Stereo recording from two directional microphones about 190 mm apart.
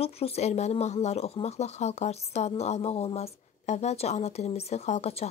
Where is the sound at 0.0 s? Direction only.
30° left (ahead or behind).